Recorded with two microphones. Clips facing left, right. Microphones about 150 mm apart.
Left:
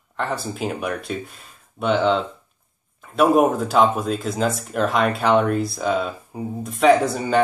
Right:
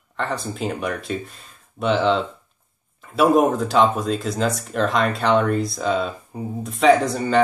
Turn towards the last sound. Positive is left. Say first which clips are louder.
# even
turn(degrees=0)  # may be behind; listen again after turning